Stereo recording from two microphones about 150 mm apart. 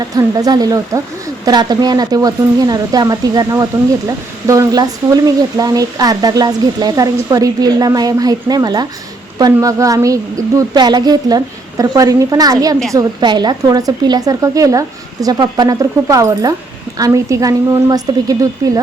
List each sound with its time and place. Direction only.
0.2 s speech: 25° right (ahead or behind)